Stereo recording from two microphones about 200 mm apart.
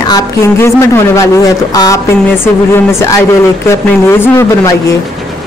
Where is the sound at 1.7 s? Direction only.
20° left (ahead or behind).